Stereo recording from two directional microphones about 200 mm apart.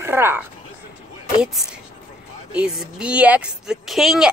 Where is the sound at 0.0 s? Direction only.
10° right (ahead or behind).